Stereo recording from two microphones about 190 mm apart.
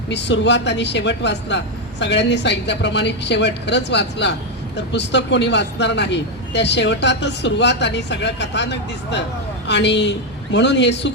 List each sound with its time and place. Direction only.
0.1 s a man's voice: 65° left (ahead or behind)